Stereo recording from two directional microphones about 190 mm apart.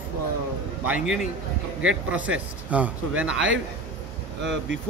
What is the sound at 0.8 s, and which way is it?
A man's voice, 5° right (ahead or behind).